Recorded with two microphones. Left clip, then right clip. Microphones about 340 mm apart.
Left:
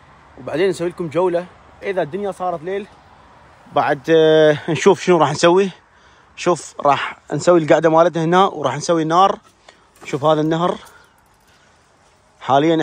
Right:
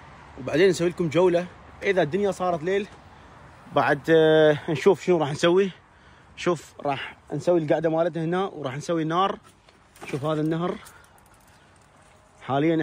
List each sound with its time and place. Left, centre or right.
0.5 s speech: centre
12.4 s a man's voice: centre